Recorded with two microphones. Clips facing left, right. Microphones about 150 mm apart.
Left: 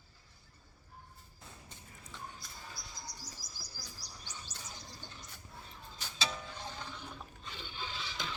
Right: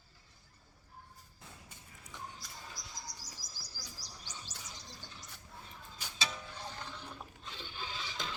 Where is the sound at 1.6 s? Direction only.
15° right (ahead or behind).